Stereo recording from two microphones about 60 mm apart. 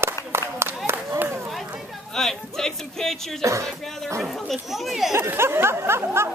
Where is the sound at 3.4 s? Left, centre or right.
Right.